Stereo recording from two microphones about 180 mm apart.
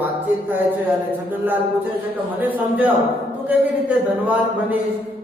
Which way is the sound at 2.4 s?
10° right (ahead or behind).